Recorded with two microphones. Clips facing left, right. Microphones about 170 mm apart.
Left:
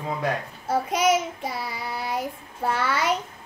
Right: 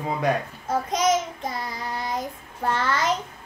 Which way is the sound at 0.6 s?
10° left (ahead or behind).